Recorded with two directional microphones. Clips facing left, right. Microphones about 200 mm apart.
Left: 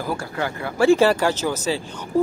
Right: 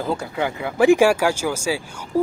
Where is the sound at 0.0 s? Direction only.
20° right (ahead or behind).